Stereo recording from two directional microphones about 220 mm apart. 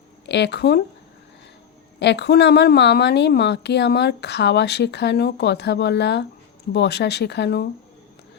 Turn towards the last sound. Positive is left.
turn(degrees=50)  # may be behind; listen again after turning